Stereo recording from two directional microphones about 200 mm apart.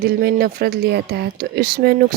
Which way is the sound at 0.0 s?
50° right (ahead or behind).